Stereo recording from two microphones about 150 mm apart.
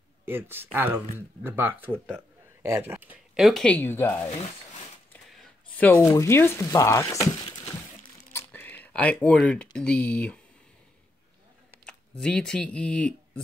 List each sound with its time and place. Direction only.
0.2 s speech: 15° right (ahead or behind)
3.3 s speech: centre (ahead or behind)
5.3 s speech: 5° left (ahead or behind); by 7.6 s 25° left (ahead or behind)
8.5 s speech: 10° left (ahead or behind)
11.8 s speech: 5° left (ahead or behind)